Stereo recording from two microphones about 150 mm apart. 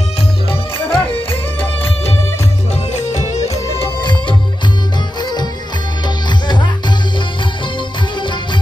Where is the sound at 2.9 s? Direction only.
50° left (ahead or behind).